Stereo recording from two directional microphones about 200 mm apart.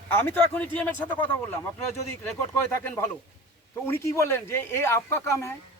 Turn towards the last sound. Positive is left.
turn(degrees=15)  # may be behind; listen again after turning